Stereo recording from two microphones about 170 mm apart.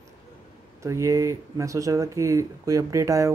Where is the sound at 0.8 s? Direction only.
20° right (ahead or behind).